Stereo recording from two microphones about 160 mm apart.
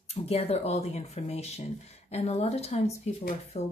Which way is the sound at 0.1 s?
40° left (ahead or behind).